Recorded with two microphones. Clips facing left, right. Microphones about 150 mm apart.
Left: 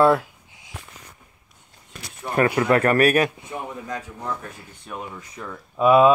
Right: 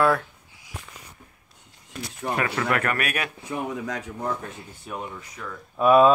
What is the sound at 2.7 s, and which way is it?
Speech, 35° left (ahead or behind).